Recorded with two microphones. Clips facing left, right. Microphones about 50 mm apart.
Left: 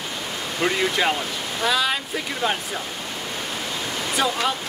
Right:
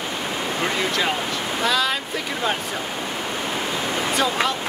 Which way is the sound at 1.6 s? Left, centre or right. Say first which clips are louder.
Even; centre.